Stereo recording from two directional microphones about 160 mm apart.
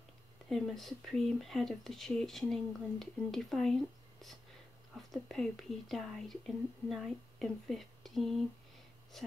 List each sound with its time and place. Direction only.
0.5 s speech: centre (ahead or behind)